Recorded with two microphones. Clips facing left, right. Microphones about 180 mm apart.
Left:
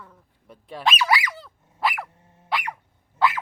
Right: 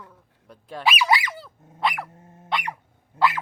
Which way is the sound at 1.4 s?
Centre (ahead or behind).